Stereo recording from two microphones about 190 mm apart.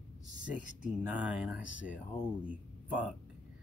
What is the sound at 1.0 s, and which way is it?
A woman's voice, 5° right (ahead or behind).